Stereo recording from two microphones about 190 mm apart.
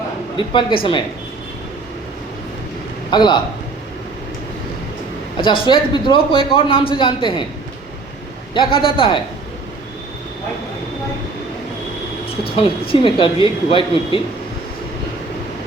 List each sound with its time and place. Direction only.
0.3 s a man's voice: 25° left (ahead or behind)
3.1 s a man's voice: 25° left (ahead or behind)
5.6 s a man's voice: 25° left (ahead or behind)
8.5 s a man's voice: 25° left (ahead or behind)
12.5 s a man's voice: 30° left (ahead or behind)